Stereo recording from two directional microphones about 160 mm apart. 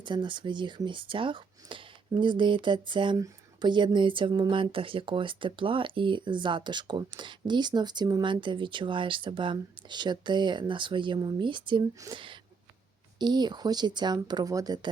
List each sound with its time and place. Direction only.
0.0 s speech: 30° right (ahead or behind)